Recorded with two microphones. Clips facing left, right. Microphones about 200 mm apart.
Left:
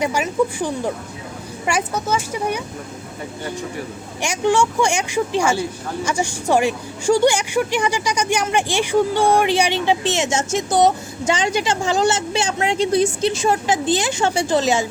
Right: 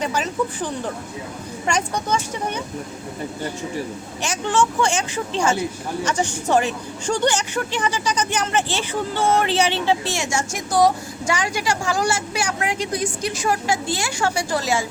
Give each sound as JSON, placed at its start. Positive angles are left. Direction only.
{"t": 0.0, "sound": "speech", "side_deg": 10}
{"t": 4.2, "sound": "a woman's voice", "side_deg": 10}